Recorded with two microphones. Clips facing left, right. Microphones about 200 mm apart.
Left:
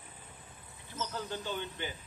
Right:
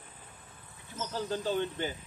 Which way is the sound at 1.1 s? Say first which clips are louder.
Right 8 dB; 35° right (ahead or behind).